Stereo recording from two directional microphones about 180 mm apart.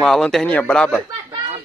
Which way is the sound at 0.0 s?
Centre (ahead or behind).